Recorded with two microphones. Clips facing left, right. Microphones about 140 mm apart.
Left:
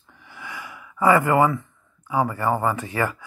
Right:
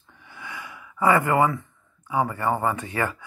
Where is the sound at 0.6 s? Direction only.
25° right (ahead or behind).